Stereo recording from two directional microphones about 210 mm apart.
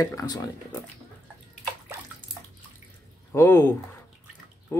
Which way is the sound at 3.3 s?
10° left (ahead or behind).